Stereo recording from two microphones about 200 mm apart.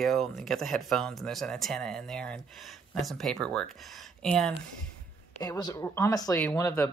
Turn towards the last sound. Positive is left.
turn(degrees=15)  # may be behind; listen again after turning